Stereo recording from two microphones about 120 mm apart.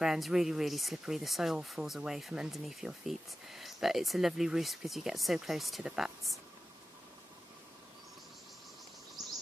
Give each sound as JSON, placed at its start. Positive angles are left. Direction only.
{"t": 0.0, "sound": "speech", "side_deg": -5}